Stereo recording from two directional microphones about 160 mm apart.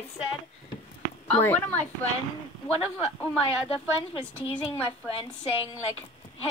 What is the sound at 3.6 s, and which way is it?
Speech, 35° left (ahead or behind).